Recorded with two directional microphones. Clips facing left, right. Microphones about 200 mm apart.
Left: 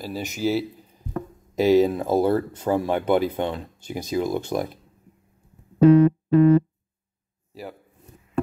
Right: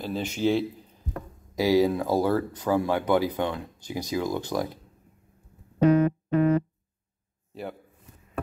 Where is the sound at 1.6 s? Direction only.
20° left (ahead or behind).